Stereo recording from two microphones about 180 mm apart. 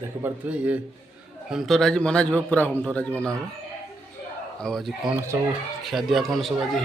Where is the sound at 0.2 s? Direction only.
10° right (ahead or behind); by 2.7 s 10° left (ahead or behind).